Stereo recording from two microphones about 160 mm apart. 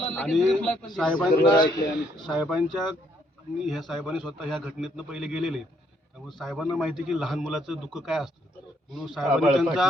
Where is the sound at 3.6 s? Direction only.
Centre (ahead or behind).